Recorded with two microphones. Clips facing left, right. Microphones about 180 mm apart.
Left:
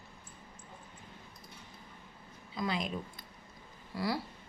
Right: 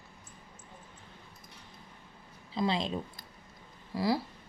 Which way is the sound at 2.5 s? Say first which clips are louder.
Right 4 dB; 25° right (ahead or behind).